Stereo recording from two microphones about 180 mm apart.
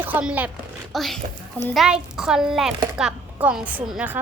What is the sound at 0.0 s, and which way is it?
A child's voice, 10° right (ahead or behind).